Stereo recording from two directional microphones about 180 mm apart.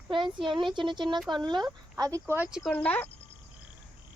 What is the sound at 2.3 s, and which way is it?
Speech, 5° right (ahead or behind).